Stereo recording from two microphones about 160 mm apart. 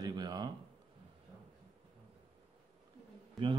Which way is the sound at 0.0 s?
25° right (ahead or behind).